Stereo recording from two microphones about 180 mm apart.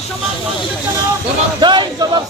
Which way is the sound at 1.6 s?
25° right (ahead or behind).